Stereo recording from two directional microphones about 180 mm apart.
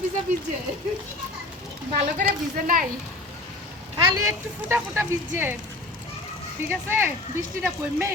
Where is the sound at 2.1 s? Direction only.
50° right (ahead or behind).